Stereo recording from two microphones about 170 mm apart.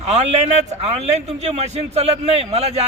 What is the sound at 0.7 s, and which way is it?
A man's voice, 40° right (ahead or behind).